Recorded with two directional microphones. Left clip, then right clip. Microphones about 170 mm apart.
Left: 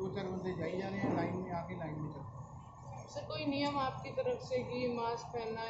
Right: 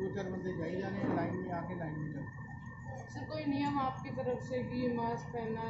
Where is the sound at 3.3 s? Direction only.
25° right (ahead or behind).